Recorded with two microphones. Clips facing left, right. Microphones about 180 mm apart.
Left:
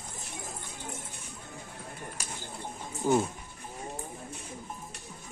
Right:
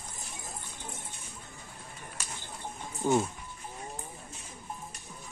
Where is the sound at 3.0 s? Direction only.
5° left (ahead or behind).